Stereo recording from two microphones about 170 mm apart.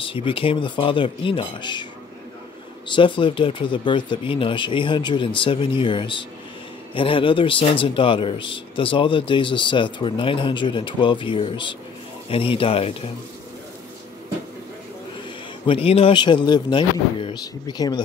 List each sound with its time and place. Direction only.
0.0 s speech: 30° left (ahead or behind)
2.9 s speech: 30° left (ahead or behind)
15.6 s speech: 35° left (ahead or behind)